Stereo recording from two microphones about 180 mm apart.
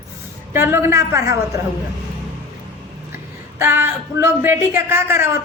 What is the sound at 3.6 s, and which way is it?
Speech, 10° right (ahead or behind).